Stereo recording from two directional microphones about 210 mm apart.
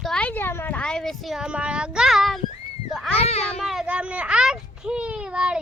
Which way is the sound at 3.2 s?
30° left (ahead or behind).